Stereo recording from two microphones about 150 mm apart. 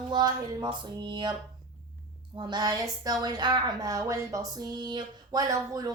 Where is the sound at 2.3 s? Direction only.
30° right (ahead or behind).